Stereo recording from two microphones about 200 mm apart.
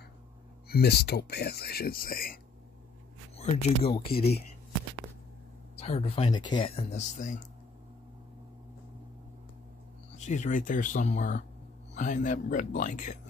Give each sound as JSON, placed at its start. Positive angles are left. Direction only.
{"t": 0.7, "sound": "speech", "side_deg": 50}
{"t": 3.3, "sound": "speech", "side_deg": 30}
{"t": 5.8, "sound": "speech", "side_deg": 30}
{"t": 10.1, "sound": "speech", "side_deg": 35}